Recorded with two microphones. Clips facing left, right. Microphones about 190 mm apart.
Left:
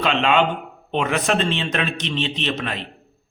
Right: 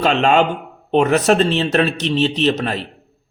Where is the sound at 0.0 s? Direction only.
40° right (ahead or behind).